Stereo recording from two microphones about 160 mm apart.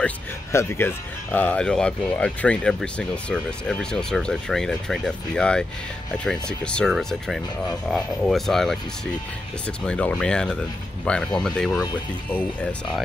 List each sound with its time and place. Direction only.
0.0 s speech: 15° left (ahead or behind)
9.8 s speech: 5° left (ahead or behind)